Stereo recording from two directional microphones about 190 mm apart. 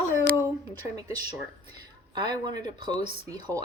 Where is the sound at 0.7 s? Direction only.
20° right (ahead or behind).